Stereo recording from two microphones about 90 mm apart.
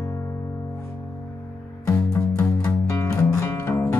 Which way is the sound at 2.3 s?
25° left (ahead or behind).